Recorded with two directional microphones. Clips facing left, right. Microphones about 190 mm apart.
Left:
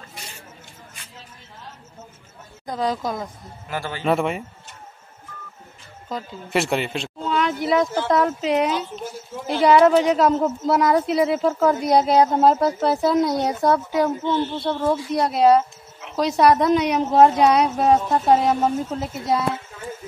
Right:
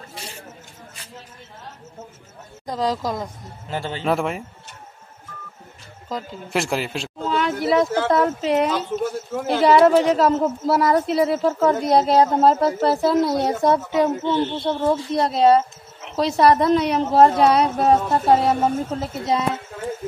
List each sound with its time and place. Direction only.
2.6 s speech: centre (ahead or behind)
3.6 s a woman's voice: 20° right (ahead or behind)
4.0 s speech: centre (ahead or behind)
6.0 s speech: centre (ahead or behind)
8.7 s speech: 50° right (ahead or behind)
9.5 s speech: centre (ahead or behind)
13.7 s a woman's voice: 25° right (ahead or behind)
14.1 s speech: 5° right (ahead or behind)
14.6 s a woman's voice: 20° right (ahead or behind)
15.0 s speech: 5° left (ahead or behind)